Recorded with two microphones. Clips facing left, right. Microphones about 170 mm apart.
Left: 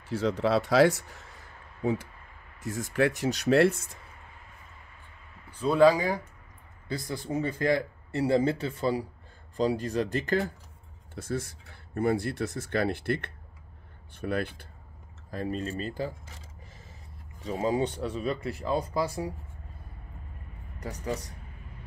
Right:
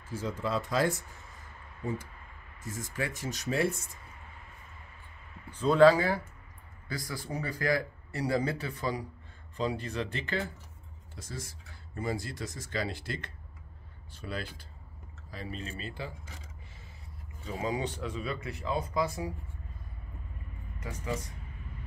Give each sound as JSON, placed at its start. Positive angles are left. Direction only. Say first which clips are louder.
{"t": 0.1, "sound": "speech", "louder": "left 7 dB", "side_deg": 75}
{"t": 2.6, "sound": "speech", "louder": "left 9 dB", "side_deg": 65}
{"t": 5.5, "sound": "speech", "louder": "even", "side_deg": 10}
{"t": 11.1, "sound": "speech", "louder": "left 10 dB", "side_deg": 60}
{"t": 15.3, "sound": "speech", "louder": "left 8 dB", "side_deg": 45}
{"t": 17.4, "sound": "speech", "louder": "left 6 dB", "side_deg": 35}
{"t": 20.8, "sound": "speech", "louder": "left 3 dB", "side_deg": 40}